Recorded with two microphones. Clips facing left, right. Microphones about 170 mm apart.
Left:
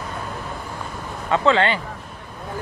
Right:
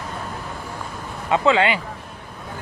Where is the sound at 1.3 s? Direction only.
15° right (ahead or behind).